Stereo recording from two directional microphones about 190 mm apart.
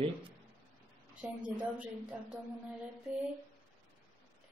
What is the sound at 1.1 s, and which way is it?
Speech, 5° right (ahead or behind).